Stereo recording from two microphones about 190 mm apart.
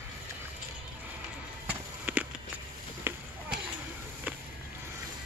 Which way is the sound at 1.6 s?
5° right (ahead or behind).